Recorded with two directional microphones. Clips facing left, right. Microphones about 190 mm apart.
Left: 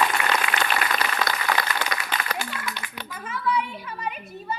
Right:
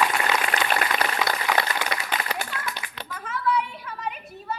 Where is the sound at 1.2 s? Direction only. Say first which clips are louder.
Even; 15° right (ahead or behind).